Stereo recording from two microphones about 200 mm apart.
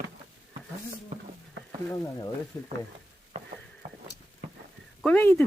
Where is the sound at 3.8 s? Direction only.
35° right (ahead or behind).